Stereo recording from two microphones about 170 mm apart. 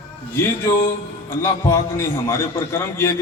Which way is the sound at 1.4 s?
15° left (ahead or behind).